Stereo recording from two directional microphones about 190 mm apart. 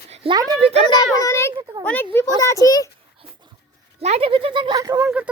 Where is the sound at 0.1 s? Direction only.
30° right (ahead or behind).